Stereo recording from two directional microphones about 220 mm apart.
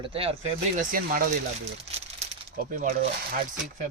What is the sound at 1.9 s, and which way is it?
Crumpling, 30° right (ahead or behind).